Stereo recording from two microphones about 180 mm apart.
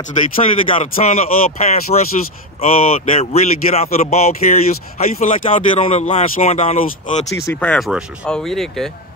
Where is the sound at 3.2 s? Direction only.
35° left (ahead or behind).